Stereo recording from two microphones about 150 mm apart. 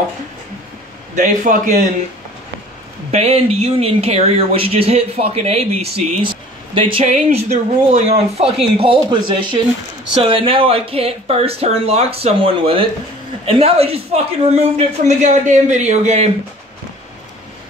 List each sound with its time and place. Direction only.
1.1 s a man's voice: 60° right (ahead or behind)
3.1 s speech: 45° right (ahead or behind)
7.1 s speech: 50° right (ahead or behind)